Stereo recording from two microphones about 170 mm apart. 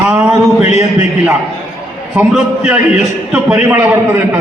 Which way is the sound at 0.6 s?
40° left (ahead or behind).